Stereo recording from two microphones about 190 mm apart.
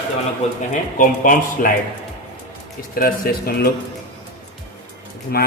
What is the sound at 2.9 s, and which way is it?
Speech, 50° left (ahead or behind).